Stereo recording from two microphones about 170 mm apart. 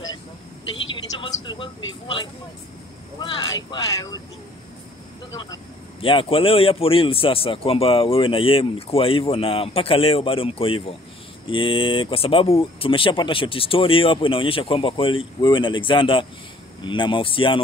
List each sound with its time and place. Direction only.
1.2 s speech: 30° left (ahead or behind)
5.3 s speech: 20° left (ahead or behind)
5.9 s a man's voice: 30° left (ahead or behind)